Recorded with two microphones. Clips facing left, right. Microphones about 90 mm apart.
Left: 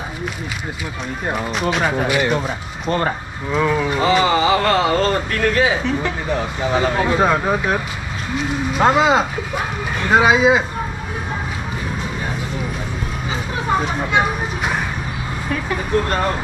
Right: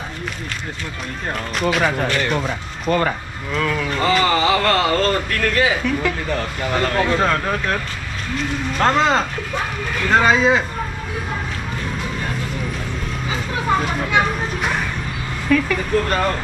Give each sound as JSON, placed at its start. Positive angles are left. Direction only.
{"t": 1.5, "sound": "speech", "side_deg": 0}
{"t": 2.9, "sound": "speech", "side_deg": 20}
{"t": 4.0, "sound": "speech", "side_deg": 5}
{"t": 5.8, "sound": "speech", "side_deg": 25}
{"t": 6.2, "sound": "speech", "side_deg": 5}
{"t": 13.7, "sound": "a sound", "side_deg": 10}
{"t": 15.5, "sound": "speech", "side_deg": 25}
{"t": 15.9, "sound": "speech", "side_deg": 5}